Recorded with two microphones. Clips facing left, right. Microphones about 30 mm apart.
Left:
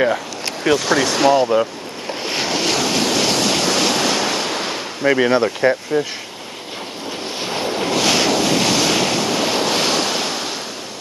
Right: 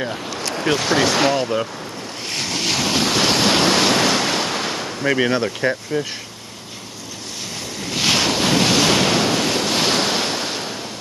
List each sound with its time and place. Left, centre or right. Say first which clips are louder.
0.0 s a sound: left 6 dB; left
0.7 s speech: even; centre
1.3 s speech: left 5 dB; centre
2.2 s waves: left 4 dB; centre
2.6 s waves: right 1 dB; centre; by 3.7 s right
3.7 s waves: right 1 dB; centre
4.2 s ocean: even; centre
7.4 s vehicle: left 9 dB; left
8.0 s waves: even; centre
9.3 s waves: left 1 dB; centre